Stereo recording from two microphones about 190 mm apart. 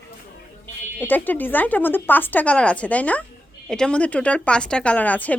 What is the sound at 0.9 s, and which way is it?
Speech, 10° left (ahead or behind).